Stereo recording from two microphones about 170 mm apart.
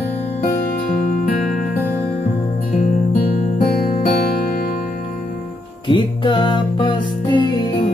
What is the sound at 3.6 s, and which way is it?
Music, 45° left (ahead or behind).